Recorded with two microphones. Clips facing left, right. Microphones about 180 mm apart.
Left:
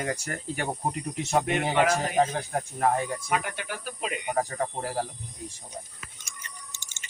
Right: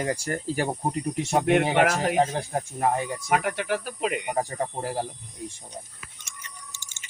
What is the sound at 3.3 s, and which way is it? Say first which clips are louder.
Speech: right 10 dB; 70° right (ahead or behind).